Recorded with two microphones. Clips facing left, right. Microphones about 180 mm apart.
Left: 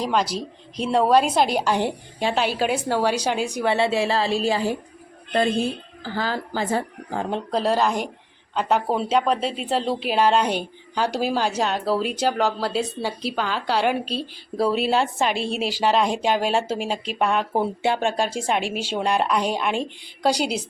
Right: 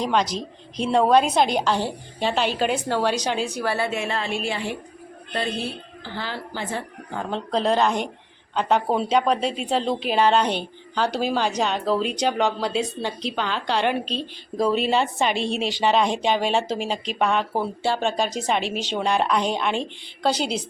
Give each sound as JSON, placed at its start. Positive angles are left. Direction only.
{"t": 0.0, "sound": "a woman's voice", "side_deg": 5}
{"t": 7.3, "sound": "a woman's voice", "side_deg": 10}
{"t": 17.5, "sound": "a woman's voice", "side_deg": 20}